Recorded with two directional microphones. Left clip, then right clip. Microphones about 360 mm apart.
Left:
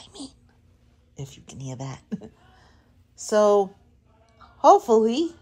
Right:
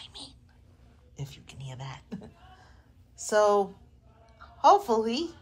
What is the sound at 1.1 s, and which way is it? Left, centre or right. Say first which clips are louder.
A woman's voice: left 4 dB; left.